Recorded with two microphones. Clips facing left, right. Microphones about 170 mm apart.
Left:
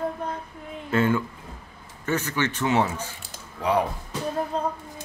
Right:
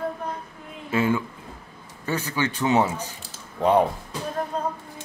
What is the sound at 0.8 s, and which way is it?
Speech, 10° right (ahead or behind).